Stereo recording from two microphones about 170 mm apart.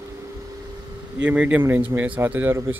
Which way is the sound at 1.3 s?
10° right (ahead or behind).